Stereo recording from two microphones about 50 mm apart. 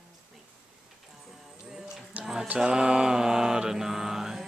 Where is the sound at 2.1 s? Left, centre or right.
Right.